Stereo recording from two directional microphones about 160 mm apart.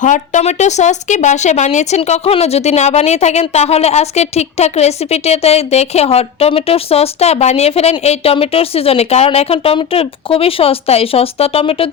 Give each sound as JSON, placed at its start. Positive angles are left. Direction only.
{"t": 0.0, "sound": "speech", "side_deg": 50}